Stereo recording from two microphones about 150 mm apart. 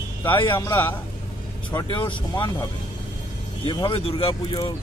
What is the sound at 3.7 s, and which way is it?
Speech, 35° left (ahead or behind).